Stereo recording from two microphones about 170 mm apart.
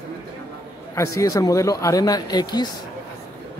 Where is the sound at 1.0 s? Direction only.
20° left (ahead or behind).